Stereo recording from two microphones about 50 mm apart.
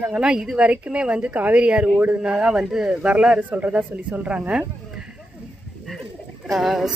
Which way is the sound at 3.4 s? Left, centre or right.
Right.